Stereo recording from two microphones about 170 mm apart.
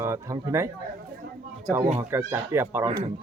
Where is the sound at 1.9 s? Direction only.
15° right (ahead or behind).